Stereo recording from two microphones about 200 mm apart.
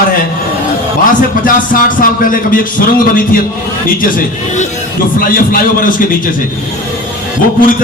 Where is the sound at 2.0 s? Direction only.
45° left (ahead or behind).